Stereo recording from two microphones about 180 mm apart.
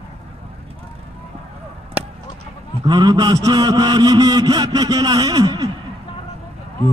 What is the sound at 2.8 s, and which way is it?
A man's voice, 25° right (ahead or behind).